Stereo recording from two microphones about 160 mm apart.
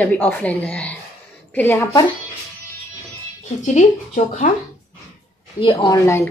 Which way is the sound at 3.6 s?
50° left (ahead or behind).